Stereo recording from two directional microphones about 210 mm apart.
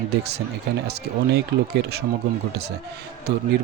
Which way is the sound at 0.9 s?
50° right (ahead or behind).